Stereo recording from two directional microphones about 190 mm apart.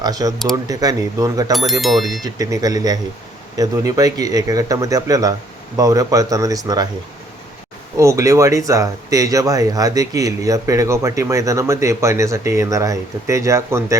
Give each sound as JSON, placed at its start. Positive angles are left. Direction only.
{"t": 0.0, "sound": "speech", "side_deg": -20}
{"t": 1.8, "sound": "speech", "side_deg": 0}
{"t": 2.2, "sound": "speech", "side_deg": -20}
{"t": 7.9, "sound": "speech", "side_deg": -15}